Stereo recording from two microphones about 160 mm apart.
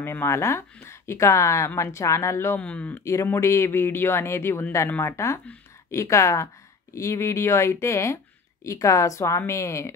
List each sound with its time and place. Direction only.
0.0 s a woman's voice: 15° left (ahead or behind)